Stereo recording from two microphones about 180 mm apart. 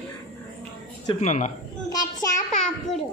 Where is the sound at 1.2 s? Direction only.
40° left (ahead or behind).